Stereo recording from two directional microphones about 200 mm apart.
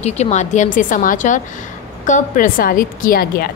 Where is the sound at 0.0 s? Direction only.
35° left (ahead or behind).